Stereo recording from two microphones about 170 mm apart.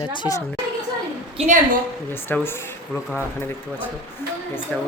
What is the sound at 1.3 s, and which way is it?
Speech, 40° right (ahead or behind).